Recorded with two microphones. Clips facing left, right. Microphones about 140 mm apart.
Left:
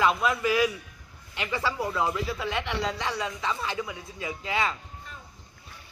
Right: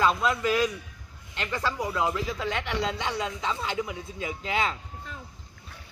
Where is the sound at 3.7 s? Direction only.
20° right (ahead or behind).